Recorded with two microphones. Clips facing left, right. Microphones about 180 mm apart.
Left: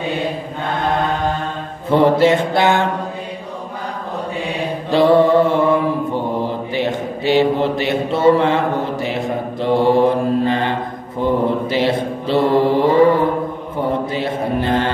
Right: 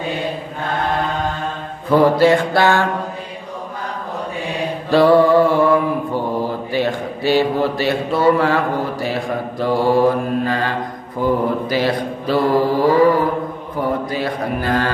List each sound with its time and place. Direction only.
1.9 s a man's voice: 25° left (ahead or behind)
4.9 s a man's voice: 20° left (ahead or behind)